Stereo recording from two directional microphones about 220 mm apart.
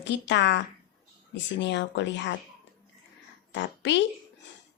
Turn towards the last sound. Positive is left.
turn(degrees=55)  # may be behind; listen again after turning